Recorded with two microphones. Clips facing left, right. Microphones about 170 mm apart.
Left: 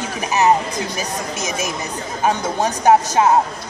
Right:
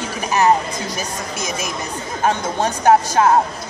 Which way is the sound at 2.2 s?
15° left (ahead or behind).